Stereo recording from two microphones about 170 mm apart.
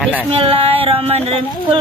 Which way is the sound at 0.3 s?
35° right (ahead or behind).